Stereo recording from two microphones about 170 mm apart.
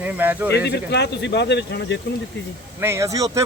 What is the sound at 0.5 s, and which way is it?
Speech, 80° left.